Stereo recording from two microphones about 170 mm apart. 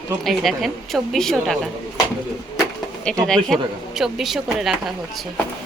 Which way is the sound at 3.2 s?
Centre (ahead or behind).